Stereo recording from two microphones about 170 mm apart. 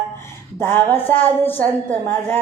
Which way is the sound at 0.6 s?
10° left (ahead or behind).